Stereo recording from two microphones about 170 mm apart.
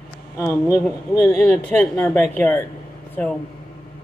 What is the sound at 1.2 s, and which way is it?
Speech, 5° left (ahead or behind).